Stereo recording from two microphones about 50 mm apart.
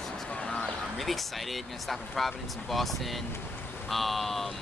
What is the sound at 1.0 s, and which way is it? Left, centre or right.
Speech, centre.